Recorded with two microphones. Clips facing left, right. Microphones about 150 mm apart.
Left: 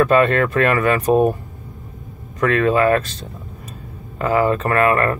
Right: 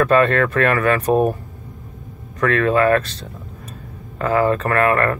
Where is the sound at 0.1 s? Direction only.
15° left (ahead or behind).